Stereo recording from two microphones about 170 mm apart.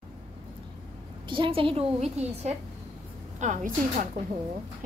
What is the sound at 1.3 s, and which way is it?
A woman's voice, 30° right (ahead or behind).